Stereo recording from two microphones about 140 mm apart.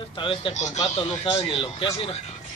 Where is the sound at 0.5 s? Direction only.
55° left (ahead or behind).